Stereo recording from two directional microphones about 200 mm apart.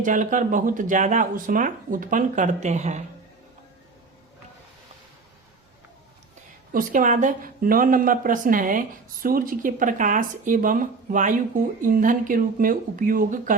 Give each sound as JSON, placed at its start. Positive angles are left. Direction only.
{"t": 0.0, "sound": "speech", "side_deg": -40}
{"t": 6.7, "sound": "speech", "side_deg": -40}